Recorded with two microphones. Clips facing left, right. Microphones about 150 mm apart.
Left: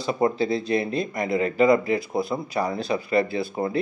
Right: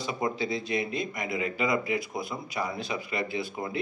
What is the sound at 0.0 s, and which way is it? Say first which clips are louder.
Speech: left 8 dB; 35° left (ahead or behind).